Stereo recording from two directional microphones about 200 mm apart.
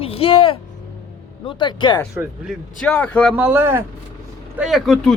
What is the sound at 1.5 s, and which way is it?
Speech, 25° left (ahead or behind).